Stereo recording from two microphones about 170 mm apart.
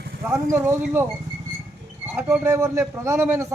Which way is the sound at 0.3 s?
15° right (ahead or behind).